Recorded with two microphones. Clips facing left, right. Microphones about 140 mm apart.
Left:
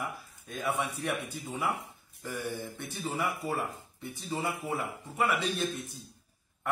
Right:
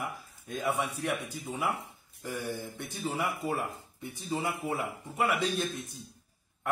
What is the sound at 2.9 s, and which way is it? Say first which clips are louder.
A man's voice: even; 15° right (ahead or behind).